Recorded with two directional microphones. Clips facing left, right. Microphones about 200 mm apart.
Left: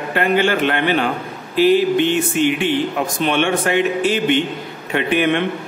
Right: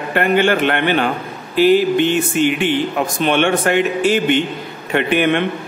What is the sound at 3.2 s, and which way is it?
A man's voice, 55° right (ahead or behind).